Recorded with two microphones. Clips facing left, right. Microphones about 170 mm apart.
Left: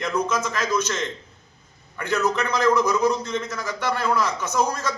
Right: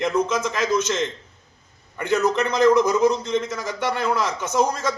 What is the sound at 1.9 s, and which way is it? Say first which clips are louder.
A man's voice: right 3 dB; 20° right (ahead or behind).